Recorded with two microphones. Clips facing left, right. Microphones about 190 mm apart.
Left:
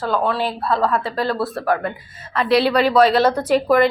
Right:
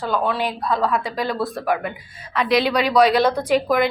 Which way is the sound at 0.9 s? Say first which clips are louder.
Left 2 dB; 15° right (ahead or behind).